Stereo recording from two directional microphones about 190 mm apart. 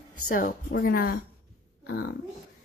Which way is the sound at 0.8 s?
50° left (ahead or behind).